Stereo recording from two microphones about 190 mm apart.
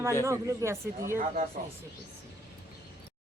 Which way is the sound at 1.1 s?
40° right (ahead or behind).